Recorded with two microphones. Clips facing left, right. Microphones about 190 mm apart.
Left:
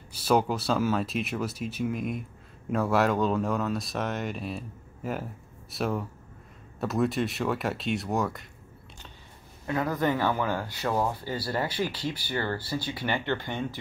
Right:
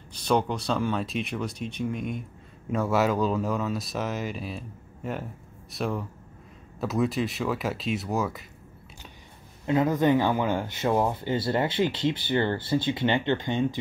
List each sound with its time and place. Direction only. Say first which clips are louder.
0.1 s speech: left 1 dB; 5° left (ahead or behind)
9.7 s speech: right 5 dB; 20° right (ahead or behind)